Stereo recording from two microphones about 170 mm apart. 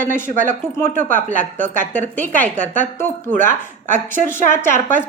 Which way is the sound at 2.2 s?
10° left (ahead or behind).